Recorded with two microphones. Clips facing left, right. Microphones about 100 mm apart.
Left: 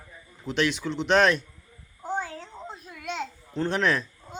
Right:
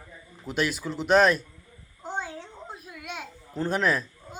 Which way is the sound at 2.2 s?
20° right (ahead or behind).